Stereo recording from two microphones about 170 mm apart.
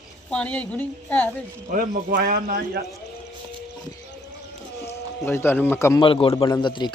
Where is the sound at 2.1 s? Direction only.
65° right (ahead or behind).